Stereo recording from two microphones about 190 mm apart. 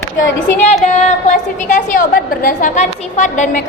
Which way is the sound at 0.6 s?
35° left (ahead or behind).